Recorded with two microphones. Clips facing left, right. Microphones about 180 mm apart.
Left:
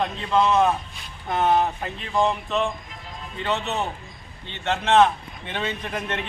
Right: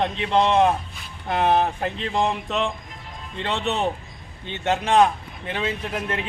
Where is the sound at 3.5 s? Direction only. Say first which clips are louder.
Right 1 dB; 25° right (ahead or behind).